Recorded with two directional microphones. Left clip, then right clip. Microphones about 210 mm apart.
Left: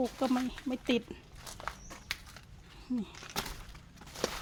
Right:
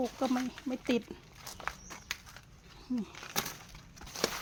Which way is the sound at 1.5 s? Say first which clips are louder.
Right 2 dB; 20° right (ahead or behind).